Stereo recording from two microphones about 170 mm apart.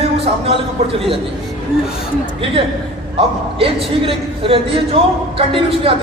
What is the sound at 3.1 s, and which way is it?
A man's voice, 35° right (ahead or behind).